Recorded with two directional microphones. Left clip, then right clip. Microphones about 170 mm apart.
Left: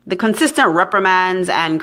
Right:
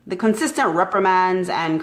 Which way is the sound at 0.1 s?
25° left (ahead or behind).